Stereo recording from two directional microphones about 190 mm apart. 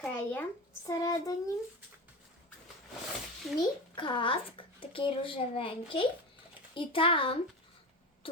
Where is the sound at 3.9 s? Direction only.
25° left (ahead or behind).